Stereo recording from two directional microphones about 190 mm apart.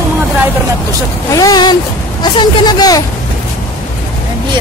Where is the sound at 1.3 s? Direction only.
20° left (ahead or behind).